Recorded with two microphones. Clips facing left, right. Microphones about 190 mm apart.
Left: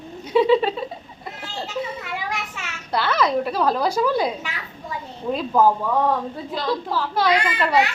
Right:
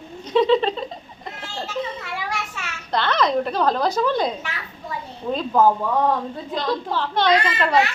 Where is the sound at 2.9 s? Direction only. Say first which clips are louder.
Even; 5° left (ahead or behind).